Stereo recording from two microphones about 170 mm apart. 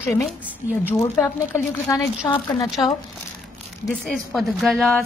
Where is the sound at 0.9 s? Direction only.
15° left (ahead or behind).